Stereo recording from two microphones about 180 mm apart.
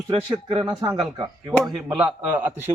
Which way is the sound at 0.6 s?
Centre (ahead or behind).